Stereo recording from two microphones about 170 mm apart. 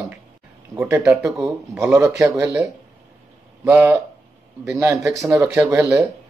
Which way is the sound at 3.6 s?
15° right (ahead or behind).